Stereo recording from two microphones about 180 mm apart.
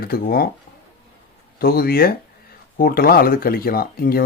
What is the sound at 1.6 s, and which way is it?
Speech, 55° left (ahead or behind).